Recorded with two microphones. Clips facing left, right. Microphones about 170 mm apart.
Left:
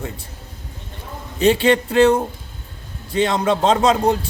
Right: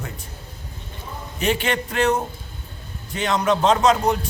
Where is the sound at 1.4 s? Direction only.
30° left (ahead or behind).